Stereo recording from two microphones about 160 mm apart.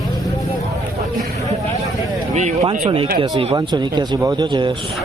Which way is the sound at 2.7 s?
35° right (ahead or behind).